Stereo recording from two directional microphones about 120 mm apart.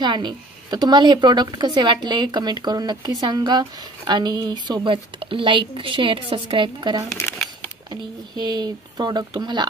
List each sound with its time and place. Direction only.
0.0 s speech: 40° right (ahead or behind)
7.1 s speech: 20° left (ahead or behind)
7.9 s speech: 35° right (ahead or behind)